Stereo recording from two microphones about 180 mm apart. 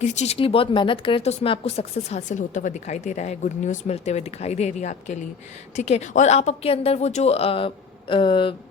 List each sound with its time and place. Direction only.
0.0 s speech: 40° left (ahead or behind)